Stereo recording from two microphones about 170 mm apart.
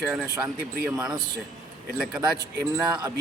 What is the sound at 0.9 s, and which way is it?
Speech, 5° right (ahead or behind).